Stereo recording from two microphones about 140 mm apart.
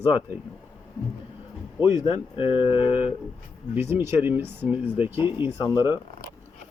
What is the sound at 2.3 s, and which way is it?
Speech, 35° left (ahead or behind).